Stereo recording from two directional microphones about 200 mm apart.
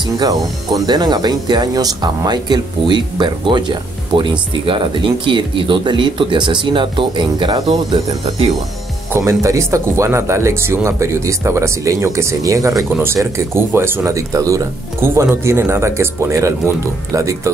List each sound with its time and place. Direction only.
0.2 s speech: 20° right (ahead or behind)
9.1 s speech: 15° right (ahead or behind)